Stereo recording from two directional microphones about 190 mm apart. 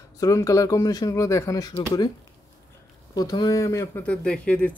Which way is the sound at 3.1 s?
20° left (ahead or behind).